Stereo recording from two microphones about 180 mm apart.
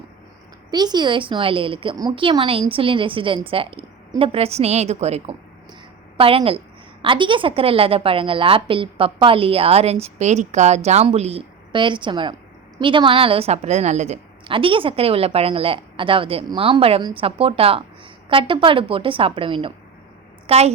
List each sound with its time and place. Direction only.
0.7 s a woman's voice: 25° right (ahead or behind)